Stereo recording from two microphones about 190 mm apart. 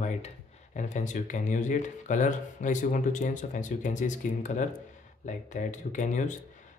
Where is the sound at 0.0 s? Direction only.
40° left (ahead or behind).